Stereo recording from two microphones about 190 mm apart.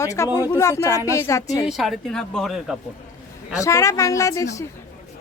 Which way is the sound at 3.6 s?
15° left (ahead or behind).